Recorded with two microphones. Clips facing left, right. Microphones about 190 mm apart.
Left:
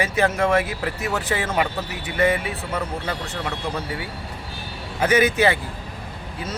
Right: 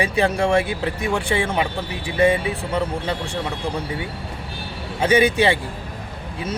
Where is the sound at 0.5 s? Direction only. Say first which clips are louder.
Right 2 dB; 30° right (ahead or behind).